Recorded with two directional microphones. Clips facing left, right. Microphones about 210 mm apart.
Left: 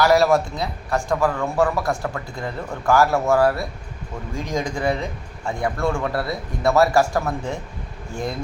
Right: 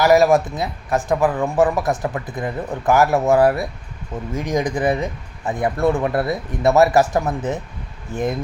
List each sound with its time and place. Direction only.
0.0 s speech: 15° right (ahead or behind)